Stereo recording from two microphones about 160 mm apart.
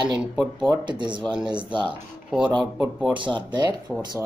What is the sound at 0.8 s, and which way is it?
Speech, 30° right (ahead or behind).